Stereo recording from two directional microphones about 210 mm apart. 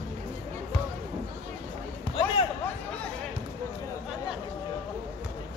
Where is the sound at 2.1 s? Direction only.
25° left (ahead or behind).